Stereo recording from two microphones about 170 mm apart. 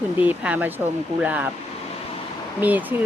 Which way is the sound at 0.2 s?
10° right (ahead or behind).